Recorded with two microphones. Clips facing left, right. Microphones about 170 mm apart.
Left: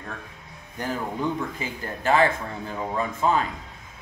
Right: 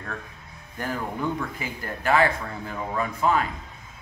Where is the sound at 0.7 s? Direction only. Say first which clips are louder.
Left 1 dB; 20° left (ahead or behind).